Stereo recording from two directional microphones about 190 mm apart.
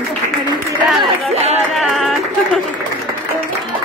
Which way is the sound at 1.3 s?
35° right (ahead or behind).